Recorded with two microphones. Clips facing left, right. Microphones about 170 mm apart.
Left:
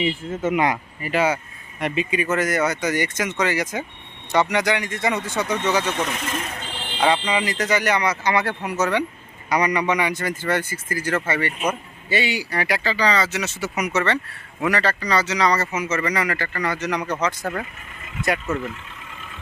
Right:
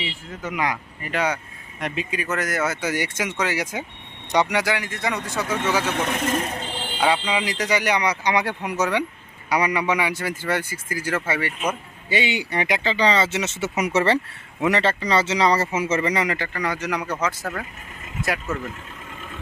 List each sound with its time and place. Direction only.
0.3 s speech: 25° left (ahead or behind)
1.0 s speech: 5° left (ahead or behind)
6.1 s speech: 45° right (ahead or behind)
6.4 s speech: 30° right (ahead or behind)
7.0 s speech: 5° right (ahead or behind)